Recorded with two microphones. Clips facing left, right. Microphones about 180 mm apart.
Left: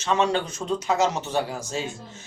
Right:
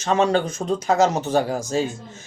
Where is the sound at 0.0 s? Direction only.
45° right (ahead or behind).